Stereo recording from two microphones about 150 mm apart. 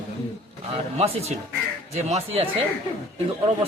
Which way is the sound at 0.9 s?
45° right (ahead or behind).